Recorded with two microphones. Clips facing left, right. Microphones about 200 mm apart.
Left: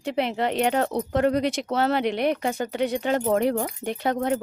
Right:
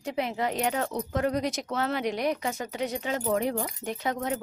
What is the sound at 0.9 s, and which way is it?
Speech, 30° left (ahead or behind).